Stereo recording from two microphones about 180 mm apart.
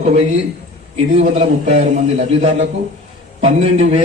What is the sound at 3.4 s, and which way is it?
Speech, 40° right (ahead or behind).